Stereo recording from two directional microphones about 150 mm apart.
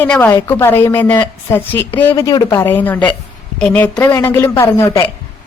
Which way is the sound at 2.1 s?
25° left (ahead or behind).